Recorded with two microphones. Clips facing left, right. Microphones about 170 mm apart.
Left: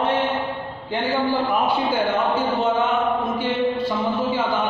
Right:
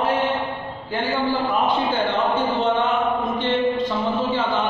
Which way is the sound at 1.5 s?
10° left (ahead or behind).